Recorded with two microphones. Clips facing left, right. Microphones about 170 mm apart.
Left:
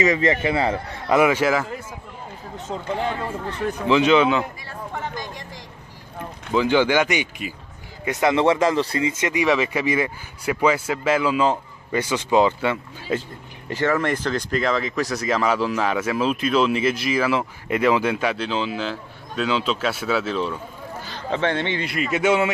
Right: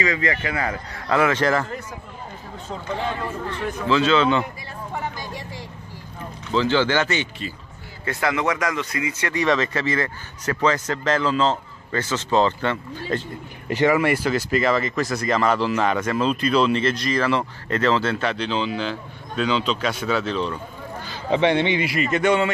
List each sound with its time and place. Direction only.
0.0 s speech: 25° left (ahead or behind); by 1.8 s 5° left (ahead or behind)
3.8 s a man's voice: 15° left (ahead or behind)
4.9 s vehicle: 5° right (ahead or behind)
6.5 s a man's voice: 15° left (ahead or behind); by 9.3 s 30° left (ahead or behind)
9.3 s a man's voice: 10° left (ahead or behind)
13.7 s speech: 15° right (ahead or behind); by 21.2 s 5° left (ahead or behind)
21.3 s a man's voice: 15° right (ahead or behind)
21.8 s speech: centre (ahead or behind)